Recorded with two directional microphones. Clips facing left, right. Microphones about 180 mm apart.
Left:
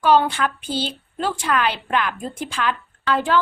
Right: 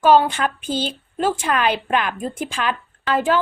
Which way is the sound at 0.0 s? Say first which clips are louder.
Right 2 dB; 15° right (ahead or behind).